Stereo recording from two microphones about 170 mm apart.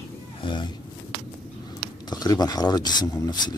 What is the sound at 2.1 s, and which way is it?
Speech, 25° left (ahead or behind).